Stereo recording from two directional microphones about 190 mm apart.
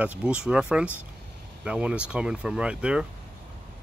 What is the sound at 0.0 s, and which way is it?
Speech, 5° right (ahead or behind).